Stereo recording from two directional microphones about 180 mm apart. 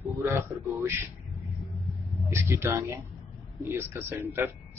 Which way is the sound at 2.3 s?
15° right (ahead or behind).